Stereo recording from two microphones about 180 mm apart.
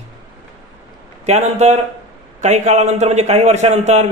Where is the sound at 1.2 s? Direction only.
40° right (ahead or behind).